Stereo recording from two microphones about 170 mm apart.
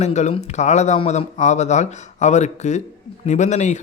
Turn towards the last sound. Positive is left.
turn(degrees=40)  # may be behind; listen again after turning